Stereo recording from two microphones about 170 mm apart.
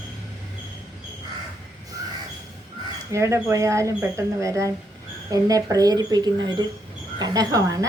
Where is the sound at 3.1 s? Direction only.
15° right (ahead or behind).